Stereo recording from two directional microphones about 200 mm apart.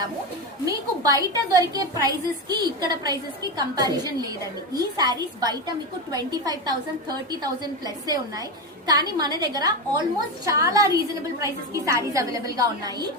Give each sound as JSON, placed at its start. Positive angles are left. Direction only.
{"t": 0.6, "sound": "a woman's voice", "side_deg": -15}